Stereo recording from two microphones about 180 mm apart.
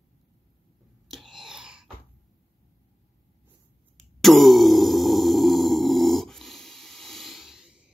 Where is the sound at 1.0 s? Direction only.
Centre (ahead or behind).